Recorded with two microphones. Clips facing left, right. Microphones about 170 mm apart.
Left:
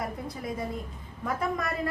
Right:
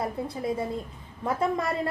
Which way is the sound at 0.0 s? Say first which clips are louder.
Right 5 dB; 30° right (ahead or behind).